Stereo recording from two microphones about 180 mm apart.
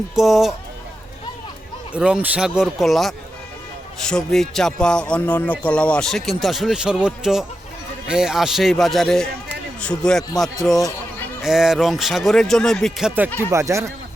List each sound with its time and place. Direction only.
0.2 s speech: centre (ahead or behind)
1.9 s speech: 5° right (ahead or behind)